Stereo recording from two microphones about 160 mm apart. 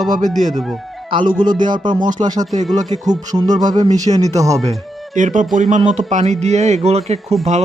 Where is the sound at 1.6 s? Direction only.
30° right (ahead or behind).